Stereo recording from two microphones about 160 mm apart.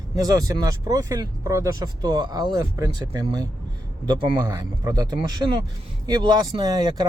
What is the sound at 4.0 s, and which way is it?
Speech, 30° right (ahead or behind).